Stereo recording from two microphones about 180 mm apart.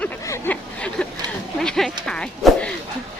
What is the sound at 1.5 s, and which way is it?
Speech, centre (ahead or behind).